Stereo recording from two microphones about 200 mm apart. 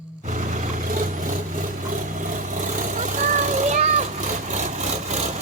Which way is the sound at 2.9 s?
40° right (ahead or behind).